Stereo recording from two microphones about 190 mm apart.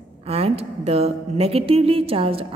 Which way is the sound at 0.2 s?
35° right (ahead or behind).